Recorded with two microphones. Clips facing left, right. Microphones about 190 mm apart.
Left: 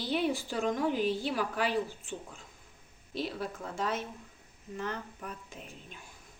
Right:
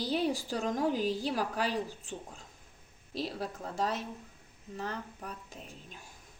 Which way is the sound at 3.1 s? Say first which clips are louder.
Left 1 dB; 40° right (ahead or behind).